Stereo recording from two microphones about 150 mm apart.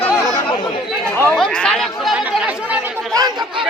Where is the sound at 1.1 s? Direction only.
10° left (ahead or behind); by 2.8 s 5° right (ahead or behind).